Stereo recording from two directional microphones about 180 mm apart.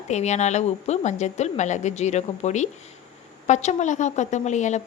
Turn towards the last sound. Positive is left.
turn(degrees=40)  # may be behind; listen again after turning